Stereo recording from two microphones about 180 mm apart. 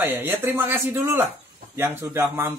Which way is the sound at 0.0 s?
10° right (ahead or behind).